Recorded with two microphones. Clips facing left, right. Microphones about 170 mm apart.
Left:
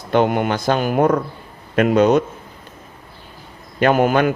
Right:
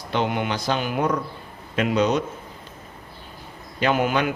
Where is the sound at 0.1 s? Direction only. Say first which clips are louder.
Left 7 dB; 50° left (ahead or behind).